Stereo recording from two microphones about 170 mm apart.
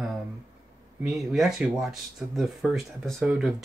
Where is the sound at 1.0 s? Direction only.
Centre (ahead or behind).